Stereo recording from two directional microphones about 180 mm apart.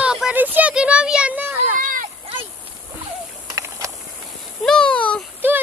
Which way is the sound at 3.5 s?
15° right (ahead or behind).